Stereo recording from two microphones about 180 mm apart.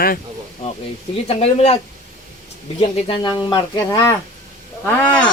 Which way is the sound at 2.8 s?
25° left (ahead or behind).